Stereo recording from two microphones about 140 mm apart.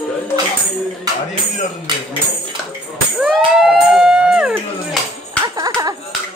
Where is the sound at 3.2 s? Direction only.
5° right (ahead or behind).